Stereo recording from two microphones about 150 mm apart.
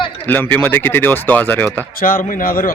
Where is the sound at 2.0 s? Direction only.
65° left (ahead or behind).